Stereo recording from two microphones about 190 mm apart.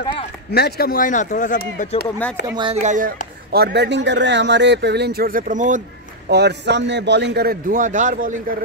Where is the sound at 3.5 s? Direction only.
60° right (ahead or behind); by 5.8 s 40° right (ahead or behind).